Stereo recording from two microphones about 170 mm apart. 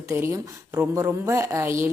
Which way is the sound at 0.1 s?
15° right (ahead or behind).